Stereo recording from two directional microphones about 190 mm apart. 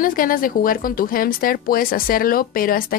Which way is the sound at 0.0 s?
45° left (ahead or behind).